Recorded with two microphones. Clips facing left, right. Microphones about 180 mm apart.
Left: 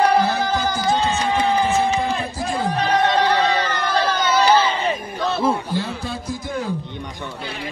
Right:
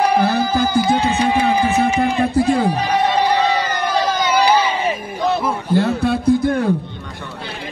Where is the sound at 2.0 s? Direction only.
60° right (ahead or behind).